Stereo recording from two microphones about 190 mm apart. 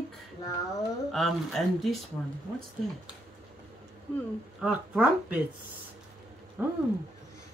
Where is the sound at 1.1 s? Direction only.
Centre (ahead or behind).